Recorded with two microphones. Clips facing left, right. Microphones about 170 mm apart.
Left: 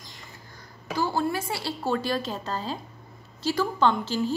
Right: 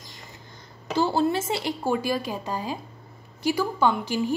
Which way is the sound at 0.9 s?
25° right (ahead or behind).